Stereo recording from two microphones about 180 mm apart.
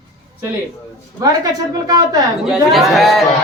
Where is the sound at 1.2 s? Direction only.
20° right (ahead or behind).